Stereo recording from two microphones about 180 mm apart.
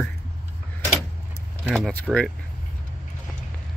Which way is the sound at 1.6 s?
Centre (ahead or behind).